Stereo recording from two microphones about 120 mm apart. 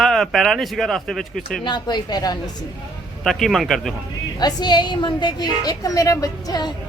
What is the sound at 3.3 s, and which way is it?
Speech, centre (ahead or behind).